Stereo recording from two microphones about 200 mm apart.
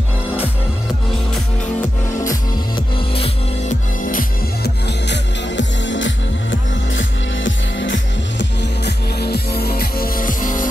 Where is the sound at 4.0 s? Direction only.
45° left (ahead or behind).